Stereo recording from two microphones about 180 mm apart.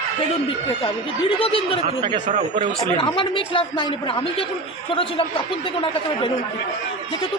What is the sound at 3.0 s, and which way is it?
Speech, 30° left (ahead or behind).